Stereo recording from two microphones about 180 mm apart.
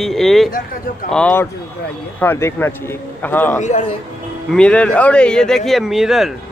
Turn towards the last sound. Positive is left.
turn(degrees=0)  # may be behind; listen again after turning